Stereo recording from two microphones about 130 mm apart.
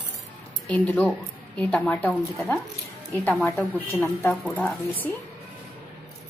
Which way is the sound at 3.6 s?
15° left (ahead or behind).